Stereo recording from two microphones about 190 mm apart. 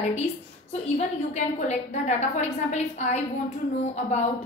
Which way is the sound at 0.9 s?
35° left (ahead or behind).